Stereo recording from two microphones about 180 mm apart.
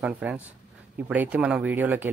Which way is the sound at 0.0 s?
5° right (ahead or behind).